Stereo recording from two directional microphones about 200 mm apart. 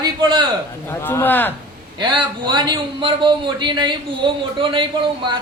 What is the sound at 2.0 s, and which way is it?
A man's voice, 25° right (ahead or behind).